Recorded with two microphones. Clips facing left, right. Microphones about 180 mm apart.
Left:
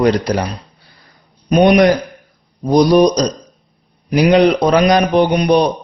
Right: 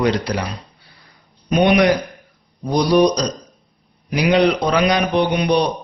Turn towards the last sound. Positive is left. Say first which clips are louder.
# left 5 dB
turn(degrees=45)  # may be behind; listen again after turning